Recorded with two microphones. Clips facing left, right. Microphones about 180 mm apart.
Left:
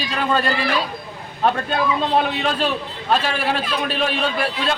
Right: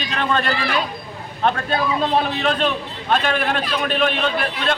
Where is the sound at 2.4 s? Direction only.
Centre (ahead or behind).